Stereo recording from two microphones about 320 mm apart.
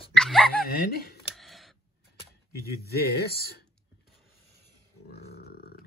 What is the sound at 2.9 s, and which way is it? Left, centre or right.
Speech, left.